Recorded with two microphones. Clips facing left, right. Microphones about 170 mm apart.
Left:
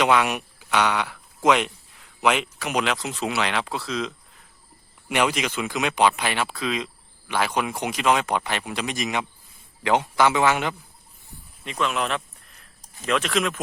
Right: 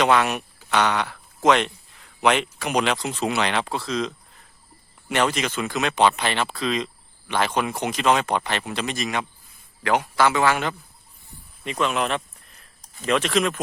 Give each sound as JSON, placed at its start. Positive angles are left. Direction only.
{"t": 0.0, "sound": "a man's voice", "side_deg": 10}
{"t": 11.6, "sound": "speech", "side_deg": 0}